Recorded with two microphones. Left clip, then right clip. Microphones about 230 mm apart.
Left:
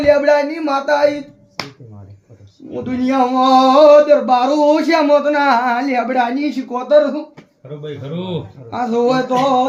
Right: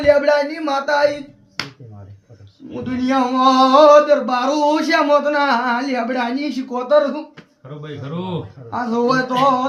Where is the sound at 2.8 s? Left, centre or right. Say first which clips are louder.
Left 3 dB; right.